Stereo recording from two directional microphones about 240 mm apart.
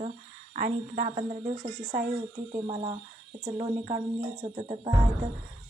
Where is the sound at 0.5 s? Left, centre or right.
Right.